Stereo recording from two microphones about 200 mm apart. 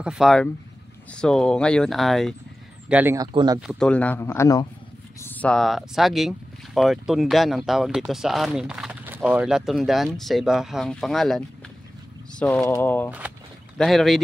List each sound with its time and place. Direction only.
0.0 s speech: centre (ahead or behind)
3.2 s speech: 20° right (ahead or behind)
3.8 s speech: 5° left (ahead or behind)